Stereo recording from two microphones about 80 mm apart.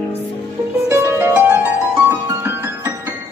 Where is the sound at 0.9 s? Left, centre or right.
Right.